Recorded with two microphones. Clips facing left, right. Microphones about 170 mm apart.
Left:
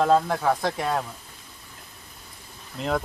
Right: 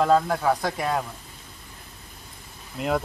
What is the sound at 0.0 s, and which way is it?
Speech, centre (ahead or behind).